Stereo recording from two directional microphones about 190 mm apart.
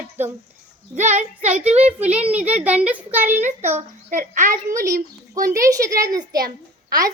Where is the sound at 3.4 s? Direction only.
40° right (ahead or behind).